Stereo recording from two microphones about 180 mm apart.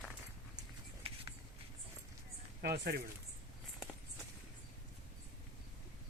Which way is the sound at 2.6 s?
60° right (ahead or behind).